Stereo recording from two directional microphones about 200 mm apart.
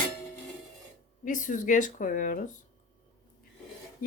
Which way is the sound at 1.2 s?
40° left (ahead or behind).